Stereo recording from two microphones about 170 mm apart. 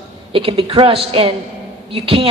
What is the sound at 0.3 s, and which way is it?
A man's voice, 30° right (ahead or behind).